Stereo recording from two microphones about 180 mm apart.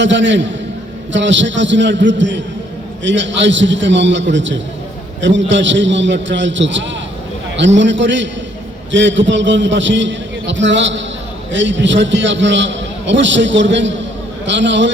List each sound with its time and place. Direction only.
0.0 s a man's voice: 90° right